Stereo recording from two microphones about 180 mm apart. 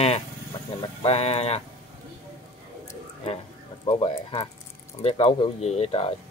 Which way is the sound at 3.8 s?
30° left (ahead or behind).